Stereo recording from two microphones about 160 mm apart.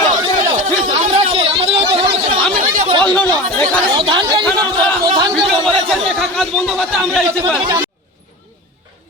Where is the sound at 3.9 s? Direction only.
30° right (ahead or behind).